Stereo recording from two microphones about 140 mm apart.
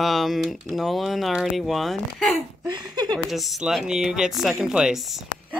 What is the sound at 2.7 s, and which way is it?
Speech, 30° right (ahead or behind).